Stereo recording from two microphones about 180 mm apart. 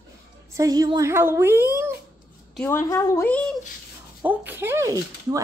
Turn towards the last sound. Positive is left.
turn(degrees=-15)  # may be behind; listen again after turning